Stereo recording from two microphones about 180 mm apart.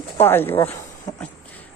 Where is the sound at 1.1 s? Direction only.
20° left (ahead or behind).